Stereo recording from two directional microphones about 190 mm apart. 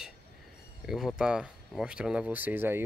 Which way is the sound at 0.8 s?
Centre (ahead or behind).